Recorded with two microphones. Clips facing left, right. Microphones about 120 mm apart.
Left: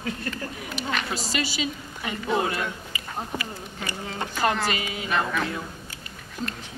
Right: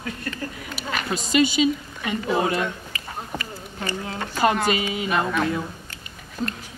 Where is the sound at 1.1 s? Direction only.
20° right (ahead or behind).